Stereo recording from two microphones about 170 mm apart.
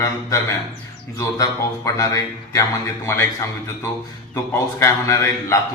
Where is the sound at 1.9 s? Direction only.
20° left (ahead or behind).